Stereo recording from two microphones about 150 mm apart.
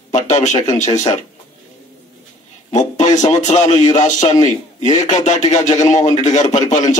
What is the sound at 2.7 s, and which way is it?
A man's voice, 50° left (ahead or behind).